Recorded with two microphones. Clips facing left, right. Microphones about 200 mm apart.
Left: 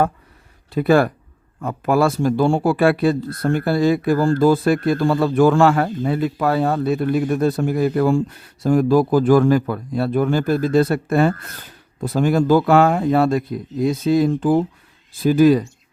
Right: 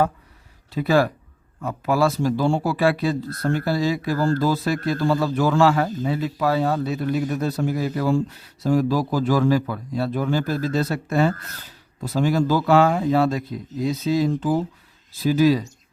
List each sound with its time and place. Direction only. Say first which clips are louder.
0.7 s speech: left 4 dB; 55° left (ahead or behind)